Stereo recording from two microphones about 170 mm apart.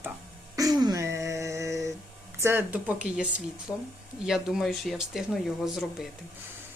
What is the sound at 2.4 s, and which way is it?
Speech, 15° right (ahead or behind).